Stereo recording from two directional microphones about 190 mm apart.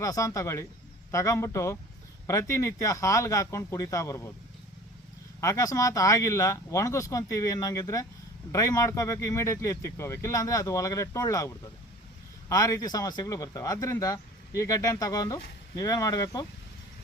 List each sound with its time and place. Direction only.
0.0 s speech: 20° left (ahead or behind)
5.4 s speech: 15° left (ahead or behind)